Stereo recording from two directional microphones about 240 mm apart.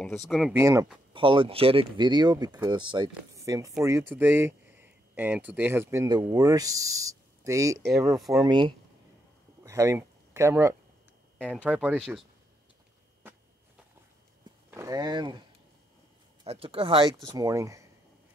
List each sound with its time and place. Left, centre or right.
0.3 s speech: centre
9.6 s a sound: centre
11.3 s speech: centre
14.7 s speech: centre
16.4 s speech: right